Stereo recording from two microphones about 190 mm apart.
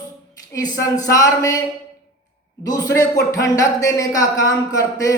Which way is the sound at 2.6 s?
20° left (ahead or behind).